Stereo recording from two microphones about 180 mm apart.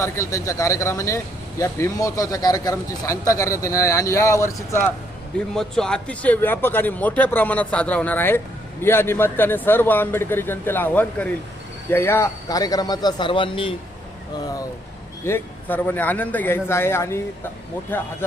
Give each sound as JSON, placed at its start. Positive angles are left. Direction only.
{"t": 0.0, "sound": "speech", "side_deg": 15}
{"t": 5.5, "sound": "a man's voice", "side_deg": 5}
{"t": 15.2, "sound": "speech", "side_deg": 10}